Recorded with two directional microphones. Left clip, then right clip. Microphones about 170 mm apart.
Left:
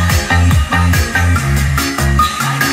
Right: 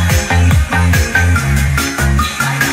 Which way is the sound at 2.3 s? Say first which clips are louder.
Even; 20° right (ahead or behind).